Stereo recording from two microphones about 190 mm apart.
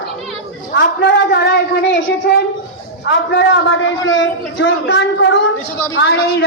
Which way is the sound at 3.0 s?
75° left (ahead or behind).